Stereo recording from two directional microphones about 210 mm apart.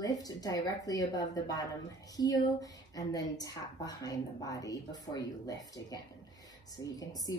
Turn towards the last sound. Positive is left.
turn(degrees=15)  # may be behind; listen again after turning